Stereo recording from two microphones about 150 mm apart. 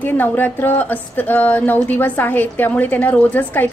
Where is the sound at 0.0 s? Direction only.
15° left (ahead or behind).